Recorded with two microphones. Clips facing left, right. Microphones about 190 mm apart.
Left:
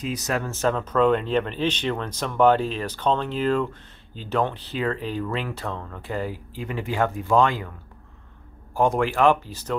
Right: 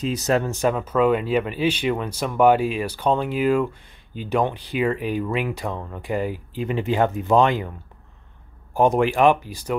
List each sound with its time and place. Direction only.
0.0 s speech: 25° right (ahead or behind)
0.5 s speech: 15° right (ahead or behind)
8.7 s speech: 20° right (ahead or behind)